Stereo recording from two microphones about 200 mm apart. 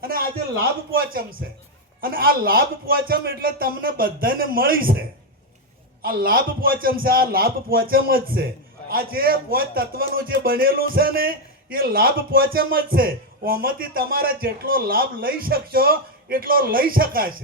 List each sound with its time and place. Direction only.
0.0 s a man's voice: 45° right (ahead or behind)